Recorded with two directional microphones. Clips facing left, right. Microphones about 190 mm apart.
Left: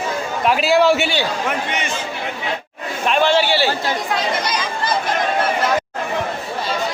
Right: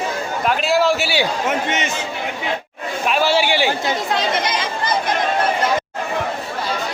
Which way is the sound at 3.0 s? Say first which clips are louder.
Left 1 dB; 5° right (ahead or behind).